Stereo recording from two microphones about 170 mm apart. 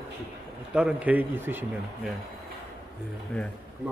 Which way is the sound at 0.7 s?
5° right (ahead or behind).